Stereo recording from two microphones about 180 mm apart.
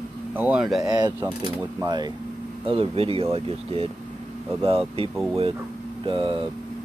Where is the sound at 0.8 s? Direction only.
20° right (ahead or behind).